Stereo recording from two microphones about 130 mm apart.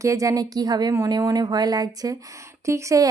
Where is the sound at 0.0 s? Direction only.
25° right (ahead or behind).